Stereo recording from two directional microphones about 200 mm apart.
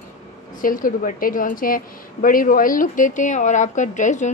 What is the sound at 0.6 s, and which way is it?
A woman's voice, 45° left (ahead or behind).